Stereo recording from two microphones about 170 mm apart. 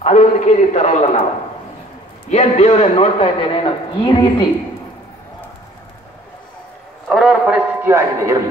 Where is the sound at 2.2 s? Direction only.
40° left (ahead or behind).